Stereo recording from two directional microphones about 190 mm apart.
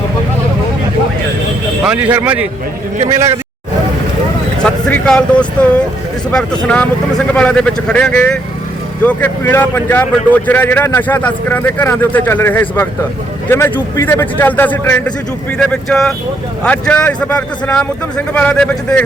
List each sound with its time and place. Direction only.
1.8 s speech: 5° right (ahead or behind)
4.6 s speech: 5° left (ahead or behind)